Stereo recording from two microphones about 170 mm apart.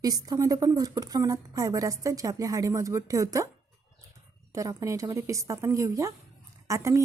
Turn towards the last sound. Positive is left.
turn(degrees=-20)  # may be behind; listen again after turning